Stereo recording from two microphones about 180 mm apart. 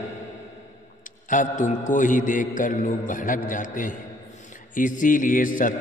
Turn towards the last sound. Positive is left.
turn(degrees=50)  # may be behind; listen again after turning